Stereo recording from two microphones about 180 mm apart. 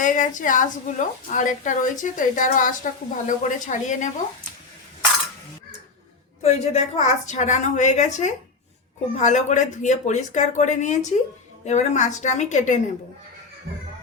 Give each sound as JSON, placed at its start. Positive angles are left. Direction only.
{"t": 0.0, "sound": "a woman's voice", "side_deg": 45}
{"t": 6.4, "sound": "a woman's voice", "side_deg": 40}